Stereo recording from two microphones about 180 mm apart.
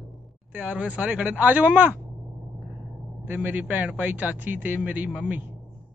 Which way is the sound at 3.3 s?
10° right (ahead or behind).